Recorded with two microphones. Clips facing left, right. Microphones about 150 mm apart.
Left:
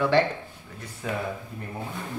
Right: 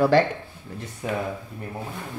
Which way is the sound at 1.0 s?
20° right (ahead or behind).